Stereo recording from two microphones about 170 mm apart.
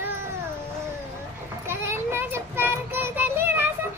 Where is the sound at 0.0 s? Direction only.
15° right (ahead or behind).